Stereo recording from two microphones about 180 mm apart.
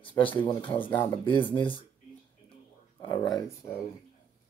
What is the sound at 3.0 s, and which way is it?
Speech, 20° left (ahead or behind).